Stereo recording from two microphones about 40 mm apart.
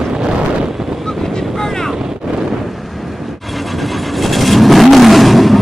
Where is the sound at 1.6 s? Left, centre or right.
Centre.